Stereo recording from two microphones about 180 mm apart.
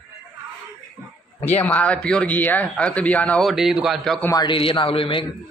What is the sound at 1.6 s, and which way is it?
Speech, 10° left (ahead or behind).